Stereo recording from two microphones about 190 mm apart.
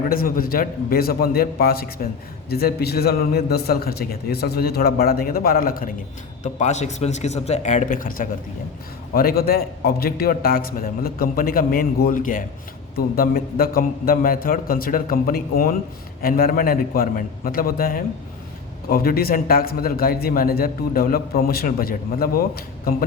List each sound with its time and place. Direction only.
0.1 s a man's voice: 50° left (ahead or behind)
6.4 s a man's voice: 40° left (ahead or behind)